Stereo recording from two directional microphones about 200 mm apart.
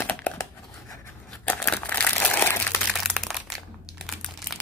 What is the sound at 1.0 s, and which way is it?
Crumpling, 10° left (ahead or behind).